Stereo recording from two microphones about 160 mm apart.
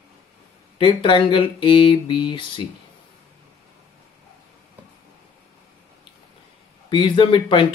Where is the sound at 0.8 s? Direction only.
30° left (ahead or behind).